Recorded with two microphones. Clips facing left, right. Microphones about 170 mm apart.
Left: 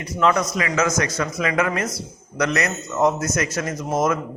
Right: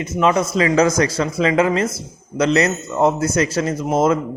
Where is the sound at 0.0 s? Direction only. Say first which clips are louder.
Right 3 dB; 20° right (ahead or behind).